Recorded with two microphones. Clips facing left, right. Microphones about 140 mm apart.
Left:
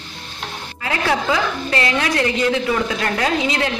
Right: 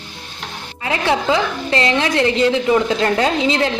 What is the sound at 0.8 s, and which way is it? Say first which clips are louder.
A woman's voice: right 2 dB; 25° right (ahead or behind).